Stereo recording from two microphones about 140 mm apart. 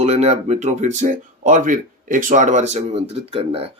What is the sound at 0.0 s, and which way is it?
Speech, 50° right (ahead or behind).